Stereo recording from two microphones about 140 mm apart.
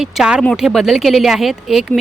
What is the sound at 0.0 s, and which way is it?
Speech, 5° right (ahead or behind).